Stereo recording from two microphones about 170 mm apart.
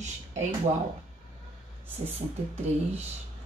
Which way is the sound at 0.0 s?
45° right (ahead or behind).